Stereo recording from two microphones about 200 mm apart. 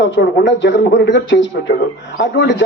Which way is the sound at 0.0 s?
60° left (ahead or behind).